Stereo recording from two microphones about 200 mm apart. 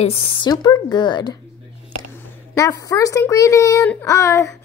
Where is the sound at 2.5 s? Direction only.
15° left (ahead or behind).